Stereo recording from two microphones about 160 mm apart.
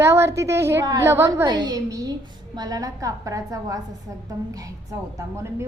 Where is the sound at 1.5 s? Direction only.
25° right (ahead or behind).